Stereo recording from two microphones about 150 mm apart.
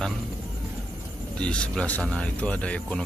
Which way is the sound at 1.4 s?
5° left (ahead or behind).